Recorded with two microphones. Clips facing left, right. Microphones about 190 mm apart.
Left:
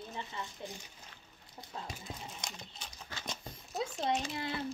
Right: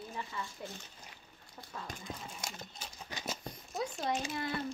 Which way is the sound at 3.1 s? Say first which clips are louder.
Right 3 dB; 15° right (ahead or behind).